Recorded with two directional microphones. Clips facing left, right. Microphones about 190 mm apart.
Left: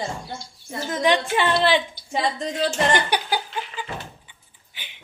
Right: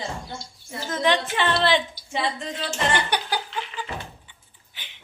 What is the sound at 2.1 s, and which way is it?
Speech, 40° left (ahead or behind).